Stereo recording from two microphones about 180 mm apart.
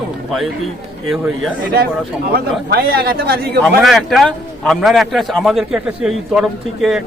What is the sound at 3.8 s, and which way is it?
A man's voice, centre (ahead or behind).